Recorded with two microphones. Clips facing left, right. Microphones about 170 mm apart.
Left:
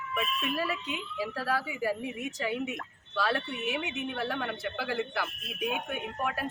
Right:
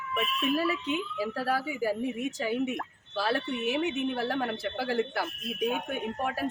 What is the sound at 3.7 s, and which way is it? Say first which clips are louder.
Speech: right 6 dB; 35° right (ahead or behind).